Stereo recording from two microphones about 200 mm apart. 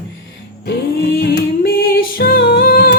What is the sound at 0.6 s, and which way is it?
Music, 50° left (ahead or behind).